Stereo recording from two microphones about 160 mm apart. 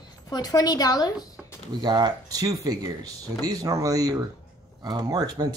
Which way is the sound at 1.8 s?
25° right (ahead or behind).